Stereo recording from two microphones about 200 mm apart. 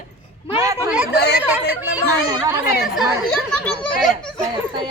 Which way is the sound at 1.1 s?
55° left (ahead or behind).